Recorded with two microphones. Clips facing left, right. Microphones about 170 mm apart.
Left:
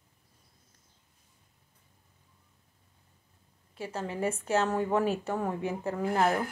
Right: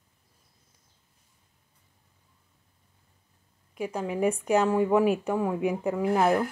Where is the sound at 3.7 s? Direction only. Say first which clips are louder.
Right 5 dB; 15° right (ahead or behind).